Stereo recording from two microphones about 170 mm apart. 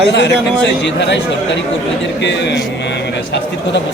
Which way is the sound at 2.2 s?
90° left.